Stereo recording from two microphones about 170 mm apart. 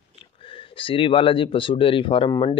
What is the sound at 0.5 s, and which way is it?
Speech, 30° left (ahead or behind).